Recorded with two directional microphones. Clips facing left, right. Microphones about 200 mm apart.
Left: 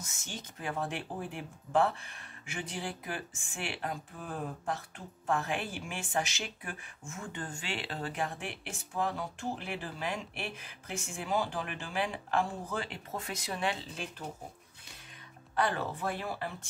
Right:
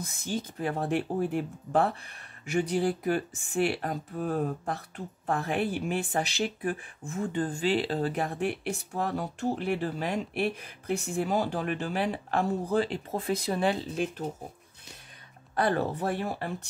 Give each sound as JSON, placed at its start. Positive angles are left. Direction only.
{"t": 0.3, "sound": "speech", "side_deg": -35}
{"t": 15.5, "sound": "speech", "side_deg": -40}